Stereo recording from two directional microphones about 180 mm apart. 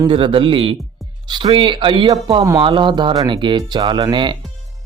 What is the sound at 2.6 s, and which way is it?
Speech, 30° right (ahead or behind).